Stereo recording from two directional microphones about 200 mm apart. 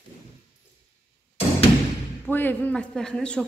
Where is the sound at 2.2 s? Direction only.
10° left (ahead or behind).